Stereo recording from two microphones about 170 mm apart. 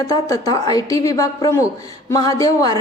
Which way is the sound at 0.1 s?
20° left (ahead or behind).